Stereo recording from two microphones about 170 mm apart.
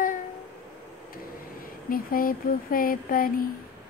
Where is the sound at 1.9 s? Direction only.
55° left (ahead or behind).